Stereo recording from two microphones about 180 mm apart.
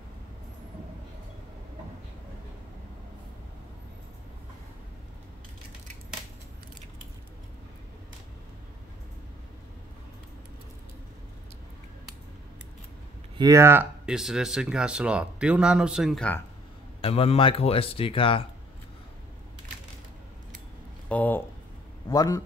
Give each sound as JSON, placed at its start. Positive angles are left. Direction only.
{"t": 13.4, "sound": "speech", "side_deg": -15}
{"t": 17.0, "sound": "speech", "side_deg": 35}
{"t": 21.1, "sound": "speech", "side_deg": 10}
{"t": 22.1, "sound": "a man's voice", "side_deg": 20}